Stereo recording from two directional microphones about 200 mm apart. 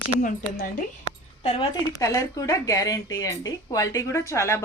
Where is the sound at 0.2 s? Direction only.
40° left (ahead or behind).